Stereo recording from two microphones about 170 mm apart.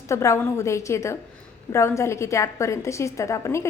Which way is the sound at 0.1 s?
15° left (ahead or behind).